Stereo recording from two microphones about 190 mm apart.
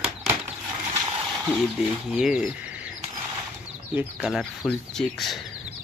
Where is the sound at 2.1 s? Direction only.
Centre (ahead or behind).